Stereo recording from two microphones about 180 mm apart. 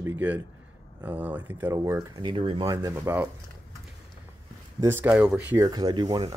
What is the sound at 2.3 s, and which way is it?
Speech, 30° right (ahead or behind).